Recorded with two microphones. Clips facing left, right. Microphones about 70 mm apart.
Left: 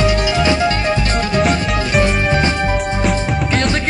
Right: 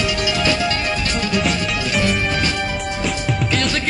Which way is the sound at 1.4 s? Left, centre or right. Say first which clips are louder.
Left 5 dB; left.